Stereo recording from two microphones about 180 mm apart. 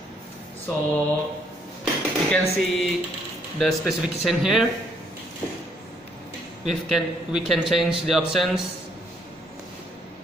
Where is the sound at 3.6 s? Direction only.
Centre (ahead or behind).